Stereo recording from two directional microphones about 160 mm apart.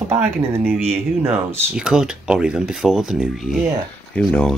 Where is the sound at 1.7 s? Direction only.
5° right (ahead or behind).